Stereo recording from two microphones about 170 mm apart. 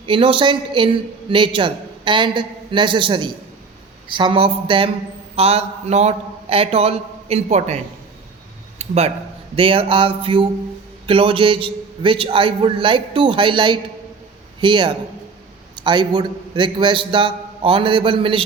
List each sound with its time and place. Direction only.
0.0 s a man's voice: 30° right (ahead or behind)
8.8 s a man's voice: 35° right (ahead or behind)